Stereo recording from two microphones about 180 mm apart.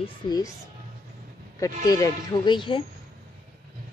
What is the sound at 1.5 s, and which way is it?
Speech, 20° left (ahead or behind).